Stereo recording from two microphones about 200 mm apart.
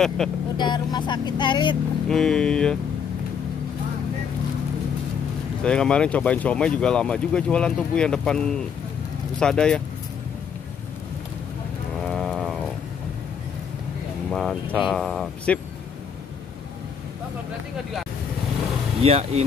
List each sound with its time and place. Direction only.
0.2 s speech: 5° left (ahead or behind)
0.6 s speech: 20° left (ahead or behind)
2.0 s speech: centre (ahead or behind)
5.6 s speech: 5° left (ahead or behind)
12.1 s a sound: centre (ahead or behind)
14.3 s speech: centre (ahead or behind)
19.0 s speech: 30° right (ahead or behind)